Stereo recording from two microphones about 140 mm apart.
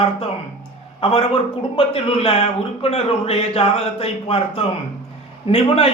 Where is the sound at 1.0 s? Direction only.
45° left (ahead or behind).